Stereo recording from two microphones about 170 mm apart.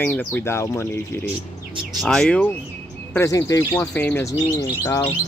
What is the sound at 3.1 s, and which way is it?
Speech, 20° left (ahead or behind).